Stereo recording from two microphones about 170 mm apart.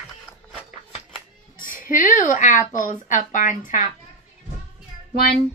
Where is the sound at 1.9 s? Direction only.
50° left (ahead or behind).